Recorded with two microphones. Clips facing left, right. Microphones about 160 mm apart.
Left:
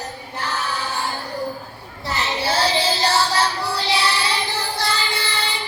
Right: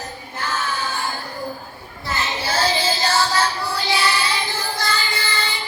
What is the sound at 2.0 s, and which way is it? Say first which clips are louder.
Child singing: left 2 dB; 35° left (ahead or behind).